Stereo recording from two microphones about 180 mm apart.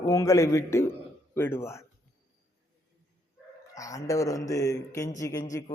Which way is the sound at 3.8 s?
20° left (ahead or behind).